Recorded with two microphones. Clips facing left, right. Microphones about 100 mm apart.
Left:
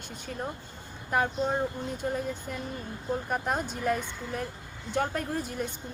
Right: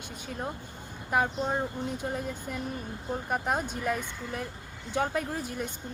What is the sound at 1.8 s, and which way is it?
Speech, 15° right (ahead or behind).